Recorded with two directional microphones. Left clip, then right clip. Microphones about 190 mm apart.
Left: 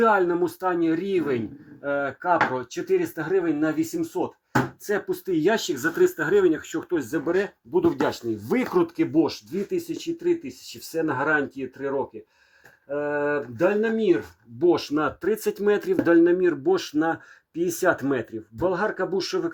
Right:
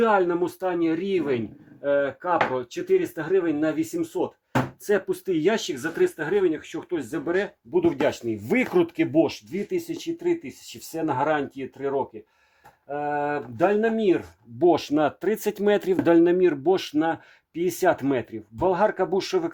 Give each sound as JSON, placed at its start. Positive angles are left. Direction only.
{"t": 0.0, "sound": "speech", "side_deg": -20}
{"t": 8.0, "sound": "speech", "side_deg": -30}